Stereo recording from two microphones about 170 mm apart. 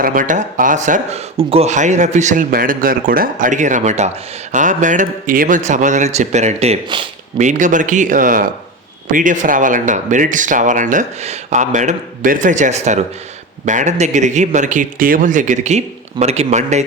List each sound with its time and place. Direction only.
0.0 s speech: 50° right (ahead or behind)
1.4 s speech: 35° right (ahead or behind)
7.3 s speech: 45° right (ahead or behind)